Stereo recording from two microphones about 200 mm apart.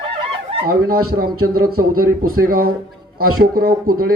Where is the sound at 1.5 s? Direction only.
50° right (ahead or behind).